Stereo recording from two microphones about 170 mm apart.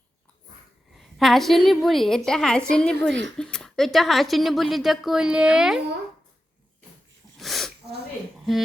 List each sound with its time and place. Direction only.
0.9 s a woman's voice: centre (ahead or behind)
7.3 s dog: centre (ahead or behind)